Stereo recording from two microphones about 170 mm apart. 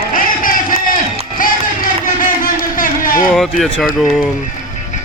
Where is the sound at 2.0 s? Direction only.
55° left (ahead or behind).